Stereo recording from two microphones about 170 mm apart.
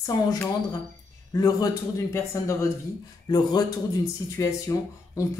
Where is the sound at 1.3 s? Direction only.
20° left (ahead or behind).